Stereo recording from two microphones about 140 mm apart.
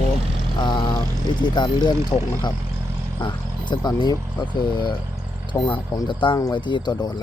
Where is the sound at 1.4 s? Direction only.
30° left (ahead or behind).